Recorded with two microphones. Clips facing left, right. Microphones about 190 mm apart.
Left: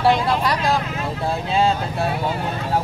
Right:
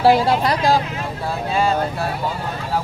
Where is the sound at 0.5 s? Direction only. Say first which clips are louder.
Right 3 dB; 35° right (ahead or behind).